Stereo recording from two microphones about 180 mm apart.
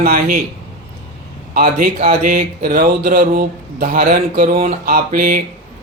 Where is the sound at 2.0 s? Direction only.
50° right (ahead or behind).